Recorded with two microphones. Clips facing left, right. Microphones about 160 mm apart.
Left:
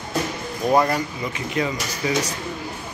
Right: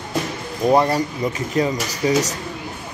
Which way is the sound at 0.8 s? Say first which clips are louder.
Right 3 dB; 35° right (ahead or behind).